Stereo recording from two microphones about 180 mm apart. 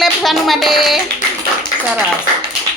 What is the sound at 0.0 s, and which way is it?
Music, centre (ahead or behind).